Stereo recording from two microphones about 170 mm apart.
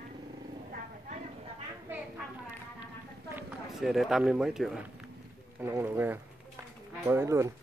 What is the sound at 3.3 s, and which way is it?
Speech, centre (ahead or behind).